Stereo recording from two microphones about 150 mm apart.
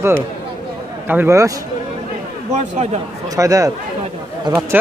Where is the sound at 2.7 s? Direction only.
45° right (ahead or behind).